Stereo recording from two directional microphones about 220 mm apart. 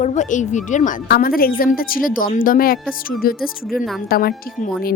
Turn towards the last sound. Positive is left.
turn(degrees=40)  # may be behind; listen again after turning